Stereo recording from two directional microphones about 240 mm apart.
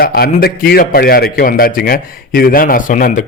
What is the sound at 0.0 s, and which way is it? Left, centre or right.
A man's voice, left.